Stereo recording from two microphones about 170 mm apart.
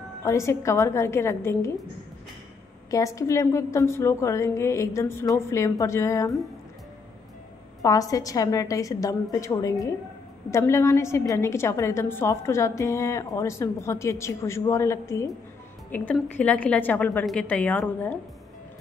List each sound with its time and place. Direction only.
0.2 s a woman's voice: 15° left (ahead or behind)
2.9 s a woman's voice: 20° left (ahead or behind)
7.8 s a woman's voice: 20° left (ahead or behind)